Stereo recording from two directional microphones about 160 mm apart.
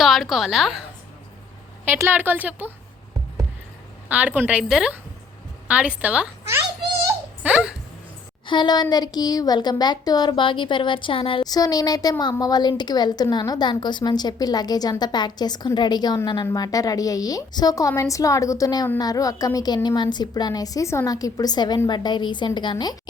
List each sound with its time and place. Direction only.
0.0 s a woman's voice: centre (ahead or behind)
1.8 s a woman's voice: 10° right (ahead or behind)
4.1 s a woman's voice: 10° right (ahead or behind)
7.4 s dog: 5° right (ahead or behind)
8.4 s a woman's voice: 30° left (ahead or behind)